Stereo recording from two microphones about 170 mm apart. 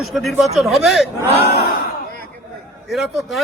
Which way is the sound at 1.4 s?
70° left (ahead or behind).